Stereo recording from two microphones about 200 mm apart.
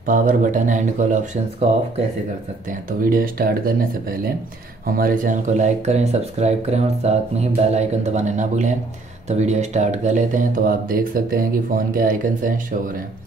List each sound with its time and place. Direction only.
0.0 s speech: 40° right (ahead or behind)
3.0 s speech: 45° right (ahead or behind)